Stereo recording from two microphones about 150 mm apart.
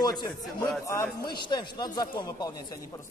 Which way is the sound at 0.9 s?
20° left (ahead or behind).